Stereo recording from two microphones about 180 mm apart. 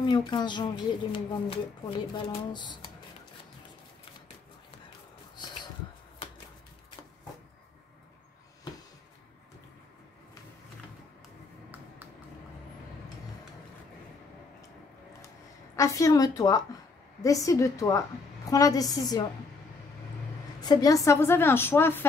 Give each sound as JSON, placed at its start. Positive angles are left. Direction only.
{"t": 0.0, "sound": "speech", "side_deg": 25}
{"t": 15.7, "sound": "a woman's voice", "side_deg": 20}
{"t": 20.6, "sound": "a woman's voice", "side_deg": 20}